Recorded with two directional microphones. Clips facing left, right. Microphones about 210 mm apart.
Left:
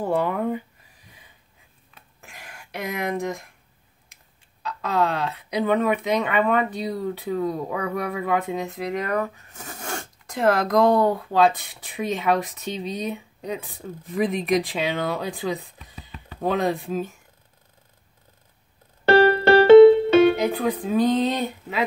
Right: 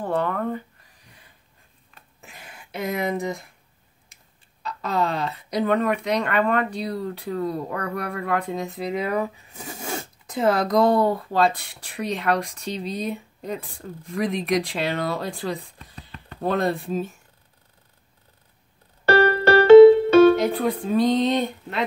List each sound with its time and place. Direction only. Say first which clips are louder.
0.0 s speech: left 2 dB; 10° left (ahead or behind)
1.9 s a sound: right 1 dB; centre (ahead or behind)
4.6 s speech: left 1 dB; centre (ahead or behind)
19.0 s music: left 2 dB; 45° right (ahead or behind)
20.3 s speech: right 1 dB; centre (ahead or behind)